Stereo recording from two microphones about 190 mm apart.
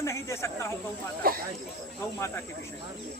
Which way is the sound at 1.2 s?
50° right (ahead or behind).